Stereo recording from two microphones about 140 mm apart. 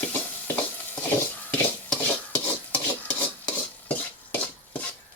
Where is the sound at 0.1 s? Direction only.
10° left (ahead or behind).